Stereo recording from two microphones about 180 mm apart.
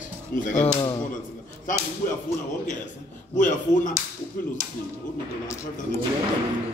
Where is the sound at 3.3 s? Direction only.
45° left (ahead or behind).